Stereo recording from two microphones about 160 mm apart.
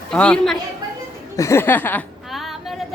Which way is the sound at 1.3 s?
20° left (ahead or behind).